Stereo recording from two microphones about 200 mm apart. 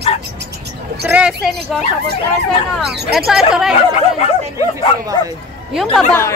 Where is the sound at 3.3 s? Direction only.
Centre (ahead or behind).